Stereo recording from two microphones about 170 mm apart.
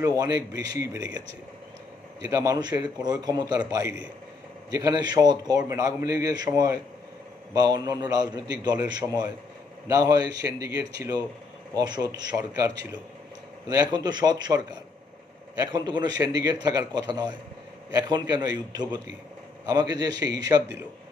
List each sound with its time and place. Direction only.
0.0 s a man's voice: 20° right (ahead or behind)
2.2 s a man's voice: 20° right (ahead or behind)